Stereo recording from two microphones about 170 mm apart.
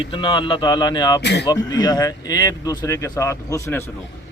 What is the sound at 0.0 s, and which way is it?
Speech, 30° left (ahead or behind).